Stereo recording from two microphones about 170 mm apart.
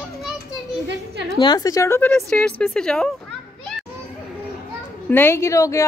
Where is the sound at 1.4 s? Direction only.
25° left (ahead or behind).